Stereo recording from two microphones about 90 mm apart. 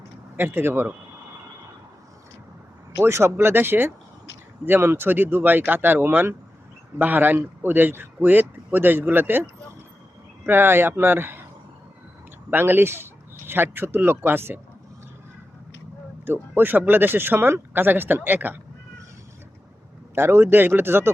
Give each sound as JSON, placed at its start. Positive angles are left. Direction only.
{"t": 0.3, "sound": "speech", "side_deg": -25}
{"t": 3.0, "sound": "speech", "side_deg": -30}
{"t": 12.5, "sound": "speech", "side_deg": -25}
{"t": 16.2, "sound": "speech", "side_deg": -25}
{"t": 20.1, "sound": "speech", "side_deg": -25}